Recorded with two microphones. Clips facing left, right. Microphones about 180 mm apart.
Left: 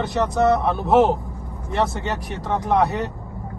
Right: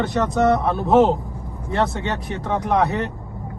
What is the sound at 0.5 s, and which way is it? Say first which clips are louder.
Speech: right 1 dB; centre (ahead or behind).